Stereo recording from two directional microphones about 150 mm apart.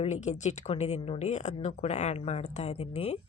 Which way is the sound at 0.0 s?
50° left (ahead or behind).